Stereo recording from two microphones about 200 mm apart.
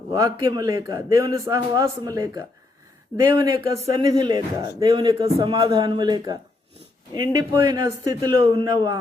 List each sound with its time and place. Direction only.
0.1 s a man's voice: 20° right (ahead or behind)